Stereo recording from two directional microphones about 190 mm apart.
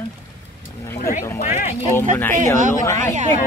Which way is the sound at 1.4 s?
40° left (ahead or behind).